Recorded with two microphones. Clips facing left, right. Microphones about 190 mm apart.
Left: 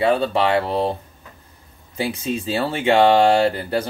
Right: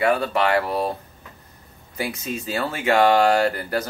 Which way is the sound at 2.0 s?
30° left (ahead or behind).